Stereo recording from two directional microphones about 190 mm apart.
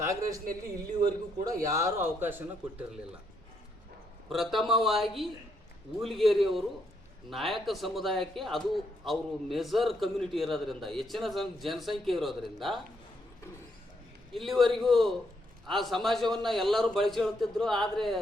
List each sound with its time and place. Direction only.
0.0 s a man's voice: 15° right (ahead or behind)
1.5 s a man's voice: 15° right (ahead or behind)
4.3 s a man's voice: centre (ahead or behind)
14.3 s a man's voice: centre (ahead or behind)